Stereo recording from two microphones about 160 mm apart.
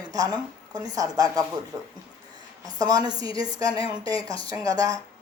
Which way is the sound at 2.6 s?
25° right (ahead or behind).